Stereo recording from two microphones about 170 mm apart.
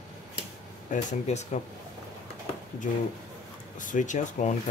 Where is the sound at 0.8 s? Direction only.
45° left (ahead or behind).